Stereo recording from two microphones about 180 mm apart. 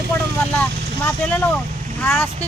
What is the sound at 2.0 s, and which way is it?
Speech, 10° left (ahead or behind).